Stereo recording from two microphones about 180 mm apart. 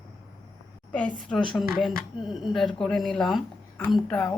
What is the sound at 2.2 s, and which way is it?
Speech, centre (ahead or behind).